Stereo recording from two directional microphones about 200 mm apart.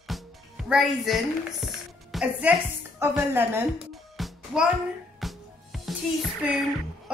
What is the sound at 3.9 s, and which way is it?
Music, centre (ahead or behind).